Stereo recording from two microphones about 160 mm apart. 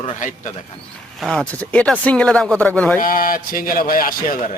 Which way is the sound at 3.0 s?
60° left (ahead or behind).